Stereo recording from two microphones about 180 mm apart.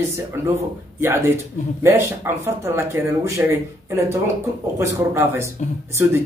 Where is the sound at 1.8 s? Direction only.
15° right (ahead or behind).